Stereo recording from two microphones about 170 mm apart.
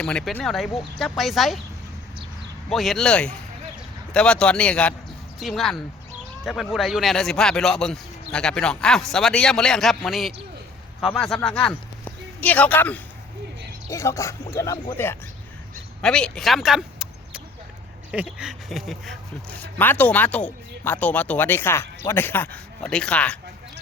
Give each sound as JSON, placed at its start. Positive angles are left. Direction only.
{"t": 0.0, "sound": "speech", "side_deg": 5}
{"t": 2.6, "sound": "speech", "side_deg": 0}
{"t": 19.8, "sound": "speech", "side_deg": 10}